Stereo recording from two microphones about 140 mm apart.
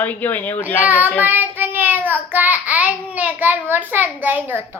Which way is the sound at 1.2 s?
15° right (ahead or behind).